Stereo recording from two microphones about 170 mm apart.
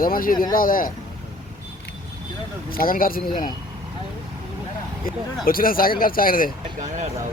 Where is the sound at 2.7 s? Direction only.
55° left (ahead or behind).